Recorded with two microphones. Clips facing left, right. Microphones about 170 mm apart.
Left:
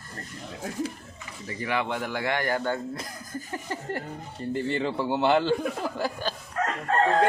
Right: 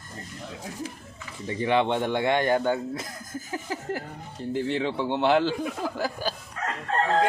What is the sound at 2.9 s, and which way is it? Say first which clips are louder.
Speech: right 1 dB; centre (ahead or behind).